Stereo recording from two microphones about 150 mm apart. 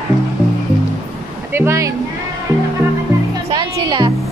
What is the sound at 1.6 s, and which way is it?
Music, 20° right (ahead or behind).